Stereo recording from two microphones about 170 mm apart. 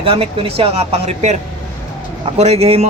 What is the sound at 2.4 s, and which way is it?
Speech, 40° right (ahead or behind).